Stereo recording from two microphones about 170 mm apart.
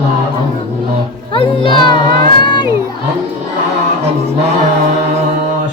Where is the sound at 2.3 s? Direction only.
25° left (ahead or behind).